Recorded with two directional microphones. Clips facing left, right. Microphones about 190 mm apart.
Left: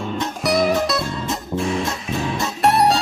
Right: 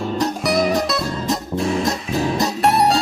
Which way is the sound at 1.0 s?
35° right (ahead or behind).